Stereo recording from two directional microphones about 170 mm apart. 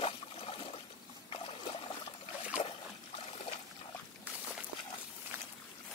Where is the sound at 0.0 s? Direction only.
35° left (ahead or behind).